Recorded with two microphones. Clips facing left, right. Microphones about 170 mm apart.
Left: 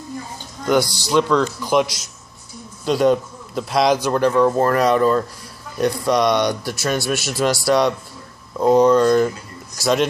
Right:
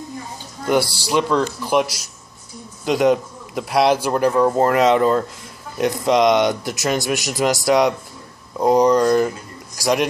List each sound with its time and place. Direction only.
0.7 s a man's voice: 10° right (ahead or behind)
2.8 s a man's voice: 15° right (ahead or behind)